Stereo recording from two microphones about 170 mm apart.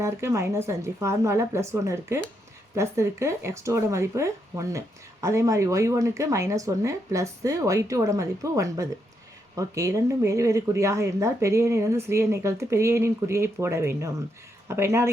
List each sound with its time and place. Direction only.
0.0 s speech: 15° right (ahead or behind)